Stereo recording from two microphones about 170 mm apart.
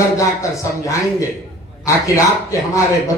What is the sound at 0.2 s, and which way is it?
Speech, 20° left (ahead or behind).